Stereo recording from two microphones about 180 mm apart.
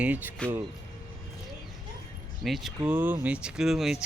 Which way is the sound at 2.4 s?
Centre (ahead or behind).